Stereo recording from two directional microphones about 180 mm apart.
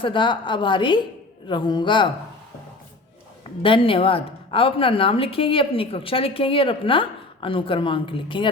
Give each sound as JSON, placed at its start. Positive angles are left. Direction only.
{"t": 0.0, "sound": "a woman's voice", "side_deg": 25}
{"t": 3.6, "sound": "a woman's voice", "side_deg": 30}